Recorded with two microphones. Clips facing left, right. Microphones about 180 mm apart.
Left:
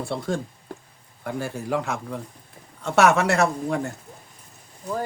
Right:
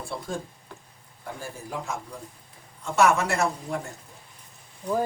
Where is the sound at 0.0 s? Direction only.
75° left (ahead or behind).